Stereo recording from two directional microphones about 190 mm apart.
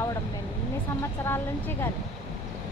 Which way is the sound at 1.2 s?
10° left (ahead or behind).